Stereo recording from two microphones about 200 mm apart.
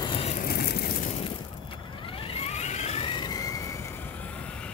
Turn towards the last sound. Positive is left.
turn(degrees=15)  # may be behind; listen again after turning